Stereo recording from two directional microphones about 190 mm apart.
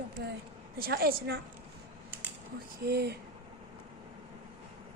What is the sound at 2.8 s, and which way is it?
Speech, 60° right (ahead or behind).